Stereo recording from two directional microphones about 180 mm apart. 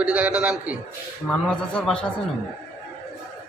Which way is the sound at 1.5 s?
5° left (ahead or behind).